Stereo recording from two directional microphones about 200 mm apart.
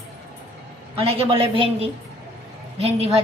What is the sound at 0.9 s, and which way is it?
A woman's voice, 30° right (ahead or behind).